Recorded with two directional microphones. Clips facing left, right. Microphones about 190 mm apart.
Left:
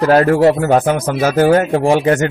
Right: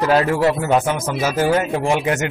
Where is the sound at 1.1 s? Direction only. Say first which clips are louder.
Left 7 dB; 60° left (ahead or behind).